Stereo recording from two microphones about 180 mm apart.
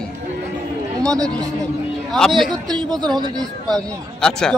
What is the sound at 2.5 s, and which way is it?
Speech, 20° right (ahead or behind).